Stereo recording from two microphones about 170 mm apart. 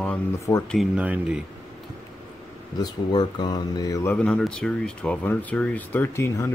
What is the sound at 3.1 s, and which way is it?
Speech, 25° left (ahead or behind).